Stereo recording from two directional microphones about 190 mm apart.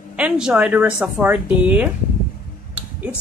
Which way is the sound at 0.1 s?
5° right (ahead or behind).